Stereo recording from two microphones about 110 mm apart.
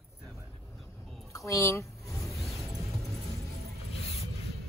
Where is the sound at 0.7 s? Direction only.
Centre (ahead or behind).